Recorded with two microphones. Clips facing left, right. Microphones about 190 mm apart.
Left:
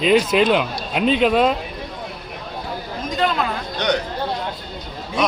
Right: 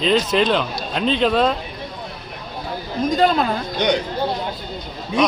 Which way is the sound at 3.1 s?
40° right (ahead or behind).